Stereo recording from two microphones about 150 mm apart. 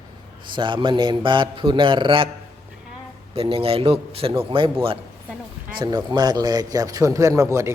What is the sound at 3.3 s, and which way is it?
A man's voice, 40° right (ahead or behind).